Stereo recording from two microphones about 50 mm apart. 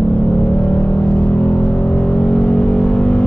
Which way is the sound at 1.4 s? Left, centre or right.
Centre.